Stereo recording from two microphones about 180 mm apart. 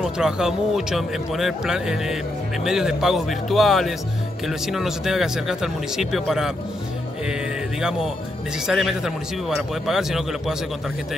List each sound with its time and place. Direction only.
0.0 s speech: 5° right (ahead or behind)
8.6 s speech: centre (ahead or behind)